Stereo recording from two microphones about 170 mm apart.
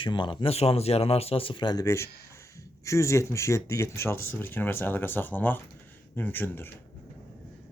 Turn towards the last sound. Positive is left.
turn(degrees=10)  # may be behind; listen again after turning